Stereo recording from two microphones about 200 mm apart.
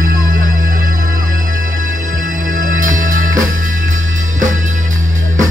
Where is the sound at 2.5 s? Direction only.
40° right (ahead or behind).